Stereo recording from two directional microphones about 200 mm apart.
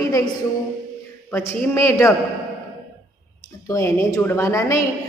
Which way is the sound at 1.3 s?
10° left (ahead or behind).